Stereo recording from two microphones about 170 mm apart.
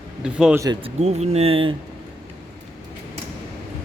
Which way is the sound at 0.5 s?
20° right (ahead or behind).